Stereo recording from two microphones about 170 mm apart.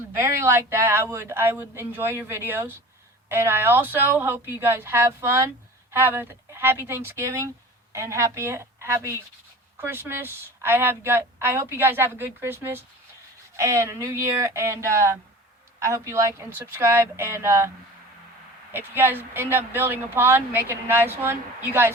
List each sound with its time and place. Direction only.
0.2 s speech: 15° right (ahead or behind)
18.7 s speech: 10° right (ahead or behind)